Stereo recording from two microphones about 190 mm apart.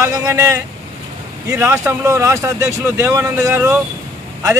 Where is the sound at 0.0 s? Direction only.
15° right (ahead or behind).